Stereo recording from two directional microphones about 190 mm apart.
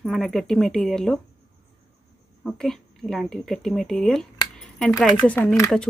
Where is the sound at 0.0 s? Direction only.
Centre (ahead or behind).